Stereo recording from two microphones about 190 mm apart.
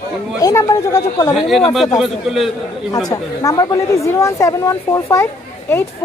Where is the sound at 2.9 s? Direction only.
20° left (ahead or behind).